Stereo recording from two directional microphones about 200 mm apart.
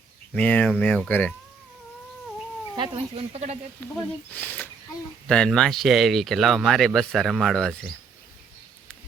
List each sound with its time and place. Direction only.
0.3 s speech: 5° left (ahead or behind)
2.7 s speech: 25° right (ahead or behind)
3.8 s speech: 10° left (ahead or behind)